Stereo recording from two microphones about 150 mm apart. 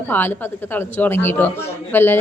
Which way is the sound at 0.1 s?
15° left (ahead or behind).